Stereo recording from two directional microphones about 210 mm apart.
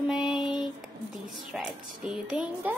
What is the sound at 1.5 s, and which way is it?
Speech, centre (ahead or behind).